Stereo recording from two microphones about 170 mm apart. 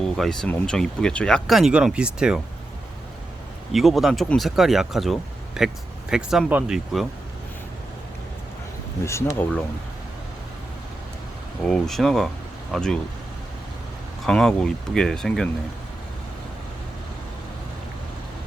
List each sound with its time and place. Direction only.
0.0 s speech: 5° left (ahead or behind)
3.7 s speech: centre (ahead or behind)
9.0 s speech: 15° left (ahead or behind)
11.6 s speech: centre (ahead or behind)
14.3 s speech: 5° left (ahead or behind)